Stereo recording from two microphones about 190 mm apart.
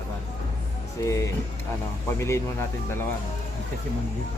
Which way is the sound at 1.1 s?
15° left (ahead or behind).